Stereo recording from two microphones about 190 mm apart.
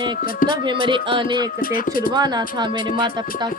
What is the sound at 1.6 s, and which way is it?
Speech, 50° left (ahead or behind).